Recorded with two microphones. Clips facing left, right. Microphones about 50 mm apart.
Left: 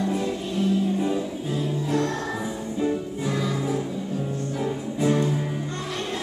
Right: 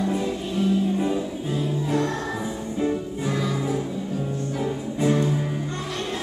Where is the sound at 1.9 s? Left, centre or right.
Centre.